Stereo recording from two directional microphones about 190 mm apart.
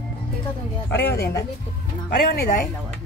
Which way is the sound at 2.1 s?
55° left (ahead or behind).